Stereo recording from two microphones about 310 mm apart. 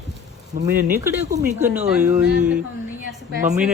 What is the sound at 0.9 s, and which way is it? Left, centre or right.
Speech, centre.